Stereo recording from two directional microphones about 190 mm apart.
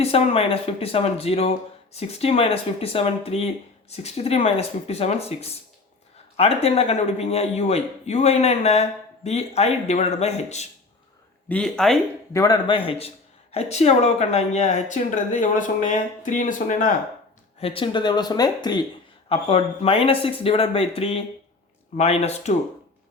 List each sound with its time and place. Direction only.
0.0 s speech: 30° left (ahead or behind)
11.4 s speech: 5° left (ahead or behind)
12.3 s speech: 20° left (ahead or behind); by 16.9 s 45° left (ahead or behind)
17.6 s speech: 30° left (ahead or behind)
19.3 s speech: 30° left (ahead or behind)